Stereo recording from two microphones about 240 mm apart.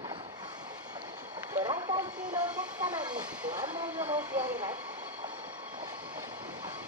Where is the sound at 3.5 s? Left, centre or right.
Centre.